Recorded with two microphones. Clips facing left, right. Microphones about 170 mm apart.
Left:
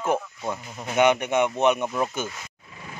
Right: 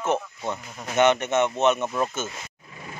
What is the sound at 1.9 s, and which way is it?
Speech, centre (ahead or behind).